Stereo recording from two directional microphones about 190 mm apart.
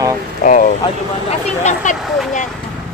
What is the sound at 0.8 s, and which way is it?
Speech, 35° left (ahead or behind).